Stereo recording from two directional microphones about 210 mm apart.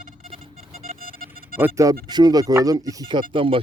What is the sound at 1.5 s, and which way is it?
Speech, 10° right (ahead or behind).